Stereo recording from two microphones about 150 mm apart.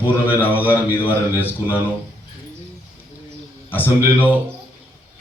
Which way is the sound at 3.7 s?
15° left (ahead or behind).